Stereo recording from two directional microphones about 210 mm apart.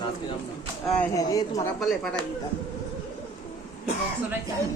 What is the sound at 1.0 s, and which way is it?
Speech, 15° left (ahead or behind).